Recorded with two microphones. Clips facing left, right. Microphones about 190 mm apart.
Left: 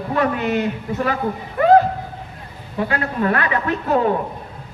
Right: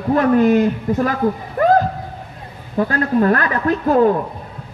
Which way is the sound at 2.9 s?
40° right (ahead or behind).